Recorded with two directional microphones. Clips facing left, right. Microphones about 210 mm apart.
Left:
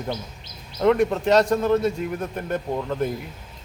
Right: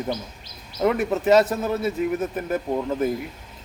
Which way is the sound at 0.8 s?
5° right (ahead or behind).